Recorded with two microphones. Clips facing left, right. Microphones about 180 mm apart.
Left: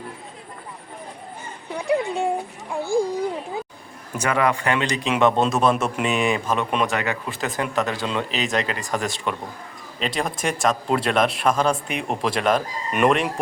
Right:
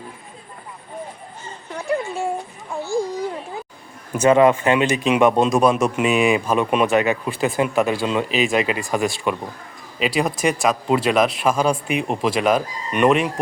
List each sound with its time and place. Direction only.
1.7 s a child's voice: 15° left (ahead or behind)
4.2 s a man's voice: 25° right (ahead or behind); by 13.3 s centre (ahead or behind)